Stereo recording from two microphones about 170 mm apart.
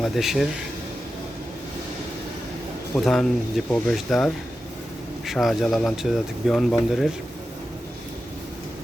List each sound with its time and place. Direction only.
0.0 s speech: centre (ahead or behind)
2.9 s speech: centre (ahead or behind)